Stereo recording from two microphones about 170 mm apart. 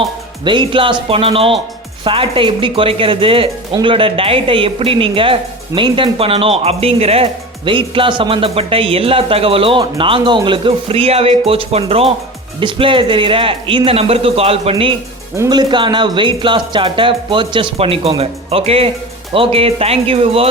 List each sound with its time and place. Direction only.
0.4 s speech: 30° right (ahead or behind)